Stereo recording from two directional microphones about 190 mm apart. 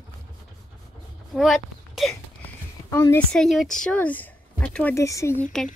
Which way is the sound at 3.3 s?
Centre (ahead or behind).